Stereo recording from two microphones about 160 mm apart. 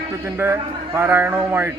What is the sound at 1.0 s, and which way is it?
Speech, 15° right (ahead or behind).